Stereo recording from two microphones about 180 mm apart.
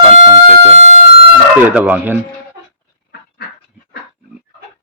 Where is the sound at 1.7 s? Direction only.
5° right (ahead or behind).